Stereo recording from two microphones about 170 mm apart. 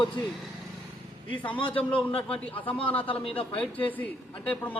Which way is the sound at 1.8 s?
10° left (ahead or behind).